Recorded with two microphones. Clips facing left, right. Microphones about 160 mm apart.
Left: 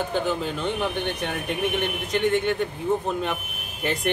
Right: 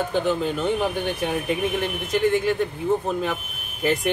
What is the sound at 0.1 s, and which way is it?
Speech, centre (ahead or behind).